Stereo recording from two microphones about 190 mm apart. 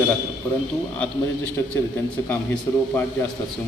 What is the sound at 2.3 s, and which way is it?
Speech, 10° left (ahead or behind).